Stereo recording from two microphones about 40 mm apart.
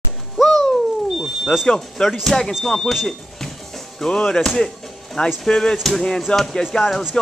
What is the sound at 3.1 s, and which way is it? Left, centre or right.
Music, centre.